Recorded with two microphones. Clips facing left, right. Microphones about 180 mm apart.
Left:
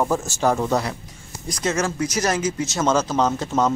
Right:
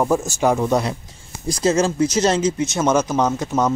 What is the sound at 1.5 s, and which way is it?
Speech, 30° right (ahead or behind).